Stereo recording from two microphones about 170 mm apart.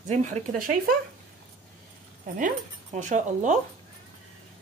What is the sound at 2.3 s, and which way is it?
Speech, 50° right (ahead or behind).